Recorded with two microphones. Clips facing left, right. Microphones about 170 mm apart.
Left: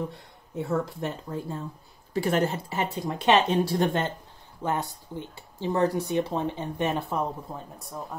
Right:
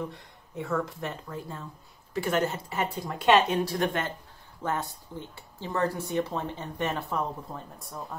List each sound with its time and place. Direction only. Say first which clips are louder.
0.6 s speech: left 2 dB; 30° left (ahead or behind)
4.6 s speech: left 2 dB; 15° left (ahead or behind)